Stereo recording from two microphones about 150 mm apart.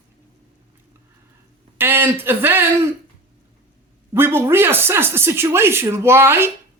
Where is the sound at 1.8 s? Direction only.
15° right (ahead or behind).